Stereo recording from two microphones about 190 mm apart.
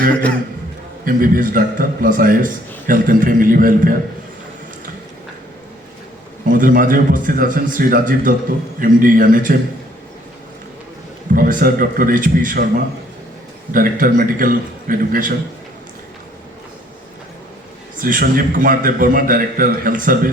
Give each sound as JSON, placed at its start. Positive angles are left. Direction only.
{"t": 0.1, "sound": "a man's voice", "side_deg": 10}
{"t": 1.0, "sound": "a man's voice", "side_deg": -45}
{"t": 6.5, "sound": "a man's voice", "side_deg": -45}
{"t": 11.3, "sound": "a man's voice", "side_deg": -50}
{"t": 17.9, "sound": "a man's voice", "side_deg": -45}